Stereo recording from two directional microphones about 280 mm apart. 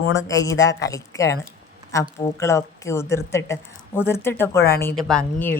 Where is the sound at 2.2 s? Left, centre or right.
Centre.